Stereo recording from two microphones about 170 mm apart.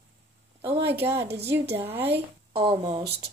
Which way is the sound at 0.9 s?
15° right (ahead or behind).